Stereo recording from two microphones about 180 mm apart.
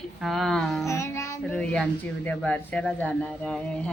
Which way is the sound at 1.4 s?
5° left (ahead or behind).